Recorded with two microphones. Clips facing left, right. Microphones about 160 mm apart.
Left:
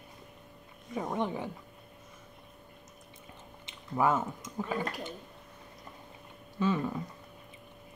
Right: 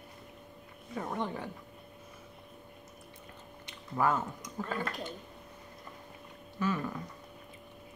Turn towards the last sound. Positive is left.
turn(degrees=20)  # may be behind; listen again after turning